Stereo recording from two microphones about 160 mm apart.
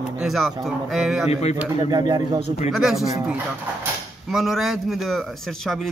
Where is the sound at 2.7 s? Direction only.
Centre (ahead or behind).